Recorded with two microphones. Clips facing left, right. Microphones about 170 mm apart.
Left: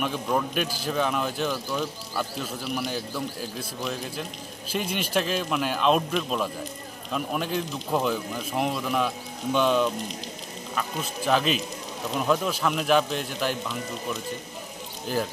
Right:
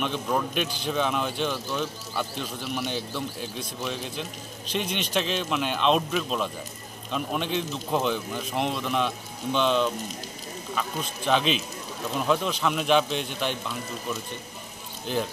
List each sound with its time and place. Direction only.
0.0 s speech: 5° left (ahead or behind)
15.1 s speech: 5° left (ahead or behind)